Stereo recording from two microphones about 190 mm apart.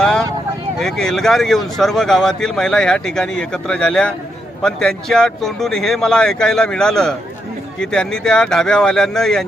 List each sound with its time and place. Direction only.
0.0 s vehicle: 5° left (ahead or behind)
0.8 s speech: centre (ahead or behind)